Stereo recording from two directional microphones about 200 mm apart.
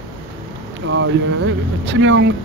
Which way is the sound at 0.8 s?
65° right (ahead or behind).